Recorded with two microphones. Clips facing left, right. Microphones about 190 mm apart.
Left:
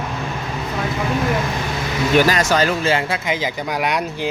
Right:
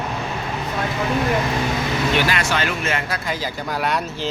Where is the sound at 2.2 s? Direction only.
40° left (ahead or behind).